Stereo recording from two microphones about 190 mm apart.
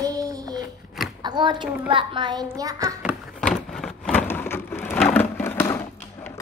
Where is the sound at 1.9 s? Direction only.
25° right (ahead or behind).